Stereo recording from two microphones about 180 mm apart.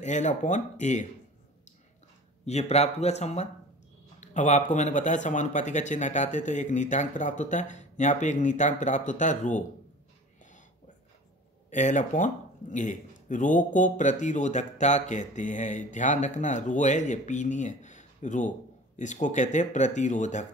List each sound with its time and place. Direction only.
0.0 s speech: 40° left (ahead or behind)
2.4 s speech: 35° left (ahead or behind)
11.7 s speech: 45° left (ahead or behind)